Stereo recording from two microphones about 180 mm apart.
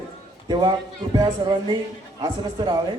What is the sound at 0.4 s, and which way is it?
A man's voice, 25° right (ahead or behind).